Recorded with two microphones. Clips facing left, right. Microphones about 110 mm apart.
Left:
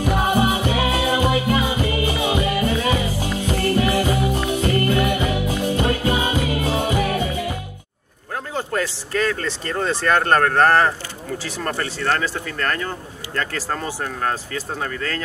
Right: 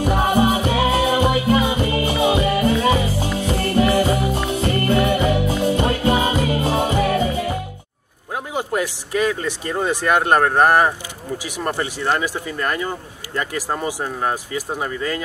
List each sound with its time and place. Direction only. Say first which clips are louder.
0.1 s music: right 2 dB; 25° right (ahead or behind)
8.5 s speech: right 2 dB; 15° right (ahead or behind)